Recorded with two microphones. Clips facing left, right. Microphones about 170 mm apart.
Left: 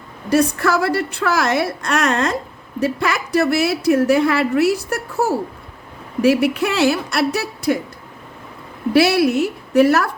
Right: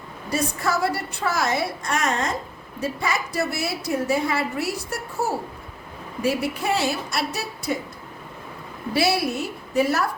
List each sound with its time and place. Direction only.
0.3 s a woman's voice: 75° left (ahead or behind)
6.2 s a woman's voice: 75° left (ahead or behind)
8.9 s a woman's voice: 70° left (ahead or behind)